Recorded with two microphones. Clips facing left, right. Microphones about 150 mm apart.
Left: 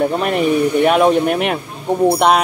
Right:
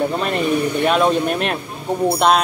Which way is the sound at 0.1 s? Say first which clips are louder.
Left 3 dB; 10° left (ahead or behind).